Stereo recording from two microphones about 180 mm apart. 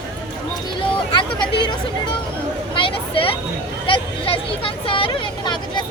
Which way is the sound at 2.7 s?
30° left (ahead or behind).